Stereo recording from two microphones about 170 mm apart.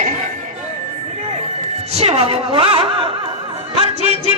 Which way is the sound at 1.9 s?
40° right (ahead or behind).